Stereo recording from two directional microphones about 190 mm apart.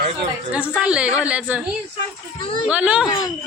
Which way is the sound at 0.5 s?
5° right (ahead or behind).